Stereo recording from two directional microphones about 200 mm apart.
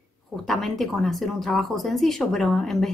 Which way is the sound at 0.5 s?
Centre (ahead or behind).